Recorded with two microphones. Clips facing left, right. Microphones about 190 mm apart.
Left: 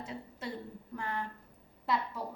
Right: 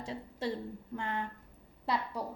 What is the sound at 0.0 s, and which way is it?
A woman's voice, 30° right (ahead or behind).